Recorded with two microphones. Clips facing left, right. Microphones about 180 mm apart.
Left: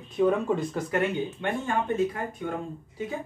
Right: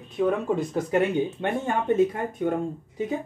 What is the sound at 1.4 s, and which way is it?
Speech, 45° right (ahead or behind).